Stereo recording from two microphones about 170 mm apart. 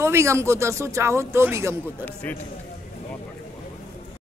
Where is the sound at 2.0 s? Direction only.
10° left (ahead or behind).